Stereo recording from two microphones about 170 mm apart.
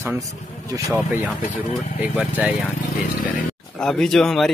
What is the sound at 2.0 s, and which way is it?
Speech, 10° right (ahead or behind).